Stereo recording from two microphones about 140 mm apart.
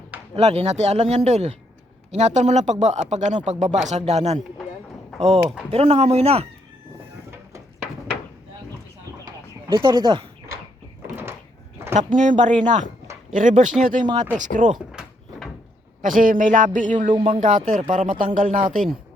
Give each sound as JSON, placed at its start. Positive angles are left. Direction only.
{"t": 0.3, "sound": "speech", "side_deg": -45}
{"t": 9.2, "sound": "a sound", "side_deg": -35}
{"t": 11.0, "sound": "a sound", "side_deg": -15}
{"t": 11.9, "sound": "speech", "side_deg": -65}
{"t": 15.0, "sound": "door", "side_deg": -5}
{"t": 16.0, "sound": "speech", "side_deg": -70}
{"t": 17.1, "sound": "speech", "side_deg": -40}
{"t": 17.4, "sound": "speech", "side_deg": -65}